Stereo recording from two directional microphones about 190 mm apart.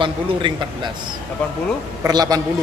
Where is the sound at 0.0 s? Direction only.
25° right (ahead or behind).